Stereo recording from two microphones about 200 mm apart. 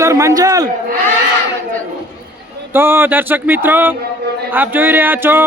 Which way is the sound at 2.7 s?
10° right (ahead or behind).